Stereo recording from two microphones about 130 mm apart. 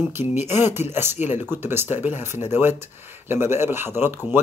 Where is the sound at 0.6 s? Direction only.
60° left (ahead or behind).